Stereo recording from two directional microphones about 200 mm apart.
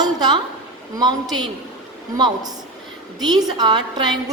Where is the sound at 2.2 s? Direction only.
20° right (ahead or behind).